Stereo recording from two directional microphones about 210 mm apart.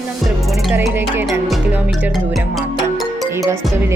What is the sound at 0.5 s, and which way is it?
Music, centre (ahead or behind).